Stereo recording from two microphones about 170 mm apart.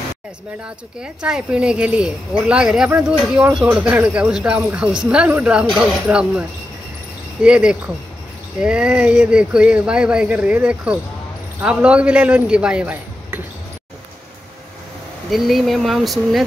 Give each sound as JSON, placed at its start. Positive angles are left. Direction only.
{"t": 1.0, "sound": "speech", "side_deg": -5}
{"t": 7.4, "sound": "speech", "side_deg": -5}
{"t": 15.2, "sound": "speech", "side_deg": 0}